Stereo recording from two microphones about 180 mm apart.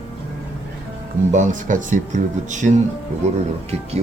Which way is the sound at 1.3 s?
45° right (ahead or behind).